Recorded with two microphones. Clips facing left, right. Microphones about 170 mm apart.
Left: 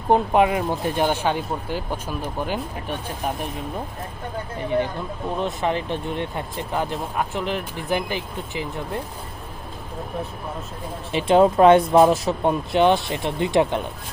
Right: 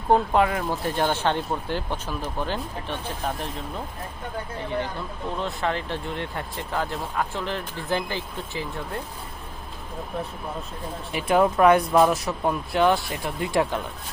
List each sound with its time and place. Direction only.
0.1 s speech: 20° left (ahead or behind)
5.4 s speech: 20° left (ahead or behind)
11.1 s speech: 25° left (ahead or behind)